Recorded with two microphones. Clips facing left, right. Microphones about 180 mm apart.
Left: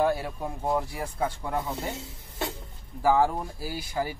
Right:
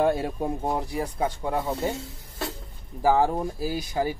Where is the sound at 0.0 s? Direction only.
25° right (ahead or behind).